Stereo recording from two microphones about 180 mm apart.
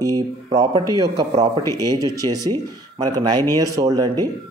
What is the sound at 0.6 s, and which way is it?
Speech, 20° right (ahead or behind).